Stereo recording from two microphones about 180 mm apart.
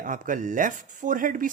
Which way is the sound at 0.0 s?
45° right (ahead or behind).